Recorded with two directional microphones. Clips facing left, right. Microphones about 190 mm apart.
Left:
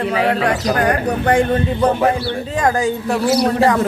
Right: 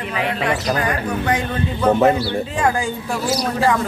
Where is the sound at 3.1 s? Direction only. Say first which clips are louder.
Left 6 dB; 60° left (ahead or behind).